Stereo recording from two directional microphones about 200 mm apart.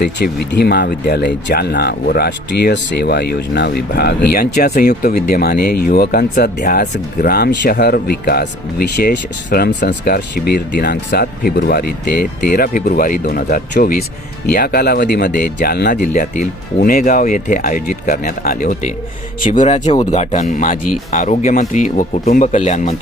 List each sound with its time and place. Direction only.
0.0 s speech: 55° left (ahead or behind); by 23.0 s 35° left (ahead or behind)